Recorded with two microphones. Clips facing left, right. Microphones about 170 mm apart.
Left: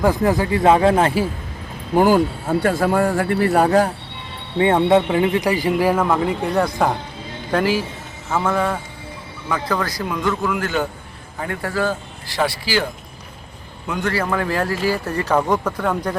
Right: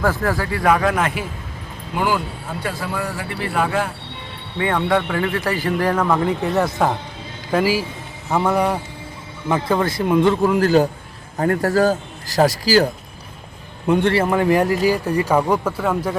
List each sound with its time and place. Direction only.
0.0 s speech: 15° left (ahead or behind); by 1.3 s 30° left (ahead or behind)
2.0 s speech: 45° left (ahead or behind)
4.5 s a man's voice: 25° left (ahead or behind); by 12.9 s 40° right (ahead or behind)
13.8 s a man's voice: 30° right (ahead or behind); by 16.1 s 5° right (ahead or behind)